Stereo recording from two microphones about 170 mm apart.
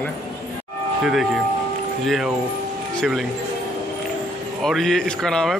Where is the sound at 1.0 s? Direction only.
Centre (ahead or behind).